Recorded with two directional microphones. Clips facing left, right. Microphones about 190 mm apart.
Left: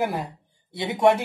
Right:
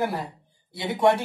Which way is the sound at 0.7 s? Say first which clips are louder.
Left 1 dB; 20° left (ahead or behind).